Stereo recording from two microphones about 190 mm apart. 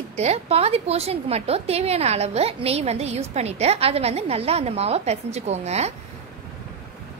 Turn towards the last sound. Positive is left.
turn(degrees=-35)  # may be behind; listen again after turning